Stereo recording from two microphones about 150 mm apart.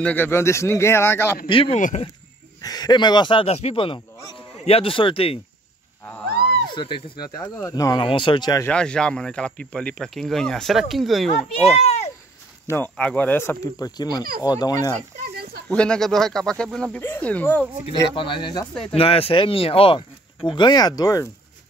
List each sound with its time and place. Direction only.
0.0 s speech: 15° left (ahead or behind)
1.5 s speech: 35° left (ahead or behind)
2.6 s speech: 25° left (ahead or behind)
6.7 s speech: 35° left (ahead or behind)
8.6 s speech: 5° left (ahead or behind)
11.8 s a sound: 45° left (ahead or behind)
12.6 s speech: 15° left (ahead or behind)
15.7 s speech: 5° left (ahead or behind)
18.1 s speech: 35° left (ahead or behind)